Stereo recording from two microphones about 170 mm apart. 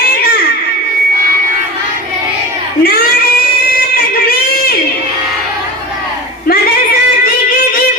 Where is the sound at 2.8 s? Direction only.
65° left (ahead or behind).